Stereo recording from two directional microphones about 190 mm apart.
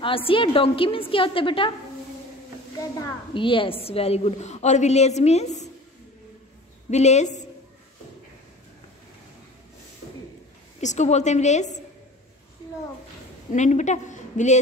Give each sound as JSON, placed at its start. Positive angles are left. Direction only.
{"t": 0.0, "sound": "a woman's voice", "side_deg": 30}
{"t": 3.0, "sound": "a woman's voice", "side_deg": 25}
{"t": 6.9, "sound": "a woman's voice", "side_deg": 35}
{"t": 10.8, "sound": "a woman's voice", "side_deg": 40}
{"t": 13.5, "sound": "a woman's voice", "side_deg": 40}